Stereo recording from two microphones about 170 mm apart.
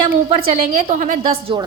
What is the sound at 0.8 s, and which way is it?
Speech, 40° right (ahead or behind).